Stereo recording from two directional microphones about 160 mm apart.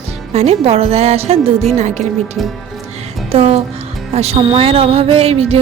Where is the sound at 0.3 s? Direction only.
40° right (ahead or behind).